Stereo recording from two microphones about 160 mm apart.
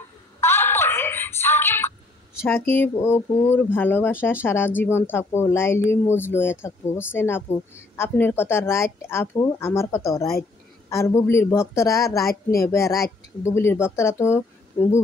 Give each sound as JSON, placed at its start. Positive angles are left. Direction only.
{"t": 0.4, "sound": "music", "side_deg": 15}
{"t": 2.4, "sound": "speech", "side_deg": 10}